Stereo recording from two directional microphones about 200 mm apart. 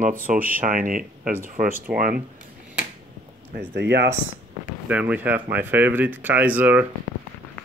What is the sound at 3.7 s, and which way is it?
Speech, 55° right (ahead or behind).